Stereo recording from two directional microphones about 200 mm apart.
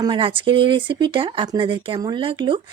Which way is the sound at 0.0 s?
25° right (ahead or behind).